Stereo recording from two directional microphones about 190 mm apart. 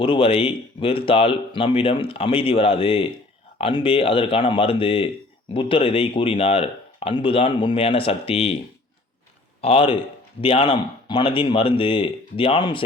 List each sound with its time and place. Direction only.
0.0 s speech: 30° left (ahead or behind)
9.6 s speech: 30° left (ahead or behind)